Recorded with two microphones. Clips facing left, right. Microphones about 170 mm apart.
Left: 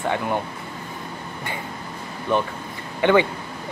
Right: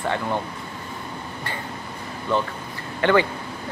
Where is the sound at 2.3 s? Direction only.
15° left (ahead or behind).